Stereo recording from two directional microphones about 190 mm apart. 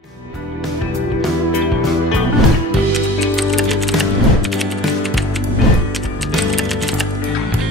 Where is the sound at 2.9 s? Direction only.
Centre (ahead or behind).